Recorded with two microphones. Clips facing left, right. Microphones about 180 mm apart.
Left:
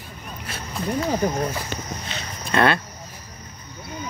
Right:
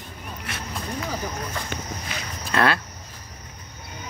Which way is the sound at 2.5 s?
Centre (ahead or behind).